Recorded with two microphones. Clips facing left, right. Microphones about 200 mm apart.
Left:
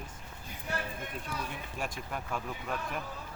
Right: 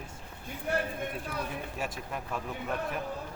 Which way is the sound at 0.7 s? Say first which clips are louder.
Right 6 dB; 55° right (ahead or behind).